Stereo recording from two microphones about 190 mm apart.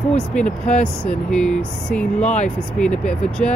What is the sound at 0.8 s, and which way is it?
Speech, 5° left (ahead or behind).